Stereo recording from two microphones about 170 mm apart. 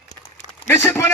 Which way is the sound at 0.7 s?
15° left (ahead or behind).